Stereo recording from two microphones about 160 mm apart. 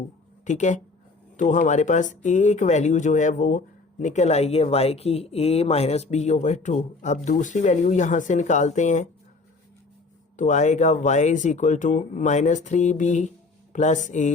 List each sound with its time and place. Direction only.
0.4 s speech: 50° left (ahead or behind)
10.3 s speech: 50° left (ahead or behind)